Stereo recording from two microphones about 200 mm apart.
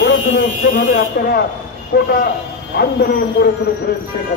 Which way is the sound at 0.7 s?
50° left (ahead or behind).